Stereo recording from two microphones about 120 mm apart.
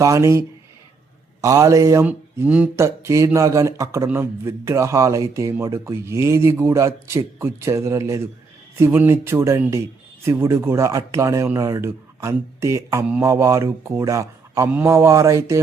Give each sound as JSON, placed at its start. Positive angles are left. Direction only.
{"t": 0.0, "sound": "speech", "side_deg": -25}
{"t": 2.0, "sound": "speech", "side_deg": -15}